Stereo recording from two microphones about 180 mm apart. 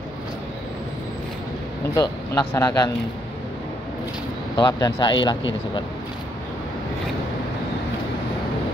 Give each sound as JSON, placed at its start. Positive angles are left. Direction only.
{"t": 2.0, "sound": "speech", "side_deg": 20}
{"t": 4.6, "sound": "speech", "side_deg": 20}